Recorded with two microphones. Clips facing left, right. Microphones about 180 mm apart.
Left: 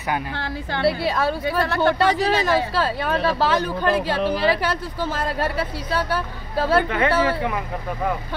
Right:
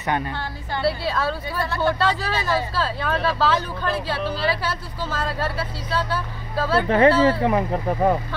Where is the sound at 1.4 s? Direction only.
90° left.